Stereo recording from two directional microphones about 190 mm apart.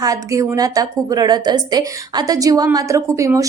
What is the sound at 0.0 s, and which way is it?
Speech, 15° right (ahead or behind).